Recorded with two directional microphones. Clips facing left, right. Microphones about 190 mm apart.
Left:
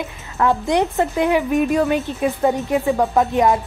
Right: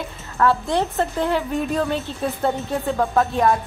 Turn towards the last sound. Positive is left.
turn(degrees=15)  # may be behind; listen again after turning